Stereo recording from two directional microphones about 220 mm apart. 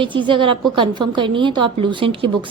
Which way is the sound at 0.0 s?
20° right (ahead or behind).